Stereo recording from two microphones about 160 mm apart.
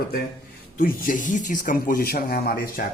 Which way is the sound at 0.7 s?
55° left (ahead or behind).